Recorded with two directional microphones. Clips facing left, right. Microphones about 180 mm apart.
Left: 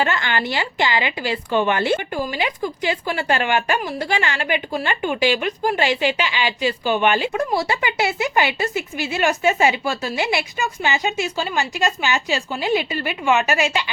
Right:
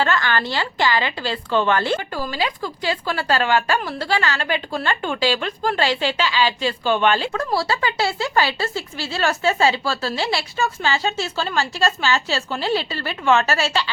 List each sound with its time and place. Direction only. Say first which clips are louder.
0.0 s a woman's voice: right 1 dB; 20° left (ahead or behind)